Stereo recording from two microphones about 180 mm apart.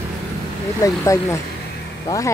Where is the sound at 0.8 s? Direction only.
20° left (ahead or behind).